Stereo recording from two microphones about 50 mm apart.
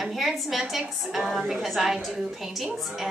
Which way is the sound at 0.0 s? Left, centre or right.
Centre.